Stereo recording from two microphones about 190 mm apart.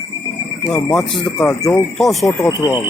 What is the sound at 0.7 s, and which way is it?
Speech, 5° left (ahead or behind).